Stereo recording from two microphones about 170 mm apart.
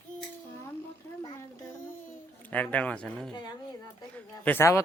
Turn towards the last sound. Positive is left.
turn(degrees=15)  # may be behind; listen again after turning